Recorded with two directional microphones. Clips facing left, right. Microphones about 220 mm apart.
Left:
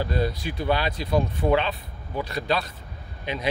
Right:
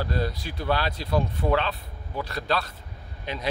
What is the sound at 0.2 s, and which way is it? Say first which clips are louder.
Speech: left 3 dB; 20° left (ahead or behind).